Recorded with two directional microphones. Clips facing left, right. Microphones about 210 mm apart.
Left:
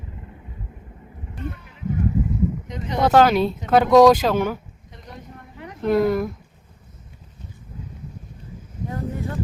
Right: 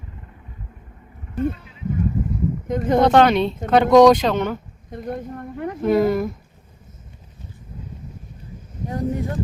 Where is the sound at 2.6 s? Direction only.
50° right (ahead or behind).